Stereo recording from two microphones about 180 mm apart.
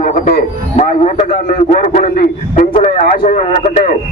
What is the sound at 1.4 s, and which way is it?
A man's voice, 50° left (ahead or behind).